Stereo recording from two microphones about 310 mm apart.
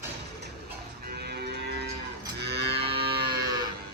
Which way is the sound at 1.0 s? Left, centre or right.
Right.